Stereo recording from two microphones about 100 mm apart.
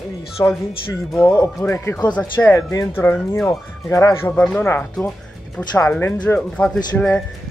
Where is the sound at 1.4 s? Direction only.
25° left (ahead or behind).